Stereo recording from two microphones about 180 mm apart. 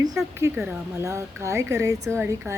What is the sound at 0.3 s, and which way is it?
Speech, 15° right (ahead or behind).